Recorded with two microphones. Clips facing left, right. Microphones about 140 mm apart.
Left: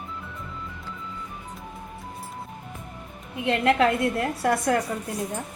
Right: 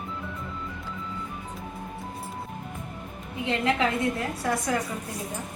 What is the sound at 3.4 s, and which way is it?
A woman's voice, 60° left (ahead or behind).